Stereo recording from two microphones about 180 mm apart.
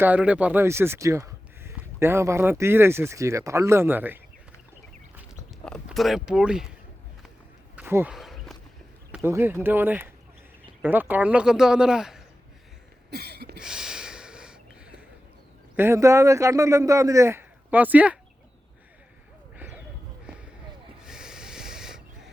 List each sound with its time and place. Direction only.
0.0 s speech: 10° right (ahead or behind)
5.6 s speech: centre (ahead or behind)
7.8 s a sound: 10° right (ahead or behind)
8.1 s walk: centre (ahead or behind)
9.1 s speech: 10° right (ahead or behind)
13.1 s a sound: 65° right (ahead or behind)
13.6 s snort: 5° right (ahead or behind)
15.7 s speech: 15° right (ahead or behind)
19.5 s a sound: 10° right (ahead or behind)
21.1 s snort: 5° right (ahead or behind)